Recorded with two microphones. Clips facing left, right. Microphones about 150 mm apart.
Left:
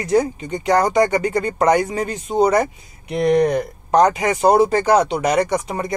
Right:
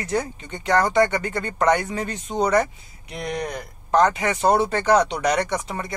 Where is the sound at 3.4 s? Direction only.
25° left (ahead or behind).